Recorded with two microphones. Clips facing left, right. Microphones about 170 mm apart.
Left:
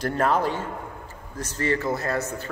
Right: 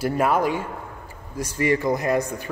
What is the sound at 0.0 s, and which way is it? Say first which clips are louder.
A man's voice: right 2 dB; 10° right (ahead or behind).